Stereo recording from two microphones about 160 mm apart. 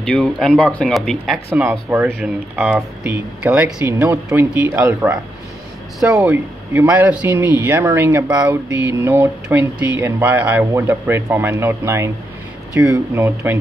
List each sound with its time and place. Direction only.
0.0 s speech: 5° left (ahead or behind)
1.5 s speech: 15° right (ahead or behind)
6.2 s speech: 10° right (ahead or behind)
12.7 s speech: 5° right (ahead or behind)
13.2 s speech: 15° right (ahead or behind)